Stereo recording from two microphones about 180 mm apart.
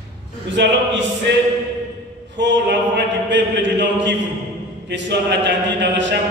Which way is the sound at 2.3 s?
85° right.